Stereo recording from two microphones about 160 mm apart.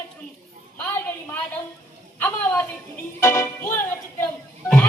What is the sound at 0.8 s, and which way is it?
A woman's voice, 10° left (ahead or behind).